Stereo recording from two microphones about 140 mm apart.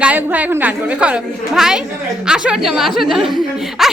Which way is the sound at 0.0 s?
10° right (ahead or behind).